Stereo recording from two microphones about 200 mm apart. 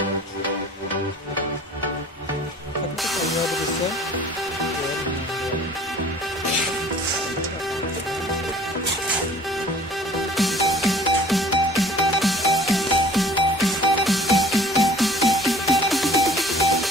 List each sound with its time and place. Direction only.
3.0 s music: centre (ahead or behind)
10.3 s music: centre (ahead or behind)